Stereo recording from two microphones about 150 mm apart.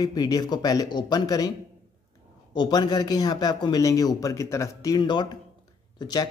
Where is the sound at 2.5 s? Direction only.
30° left (ahead or behind).